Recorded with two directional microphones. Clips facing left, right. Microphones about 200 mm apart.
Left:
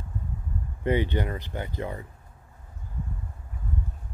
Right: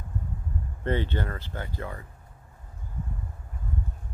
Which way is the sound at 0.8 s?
15° left (ahead or behind).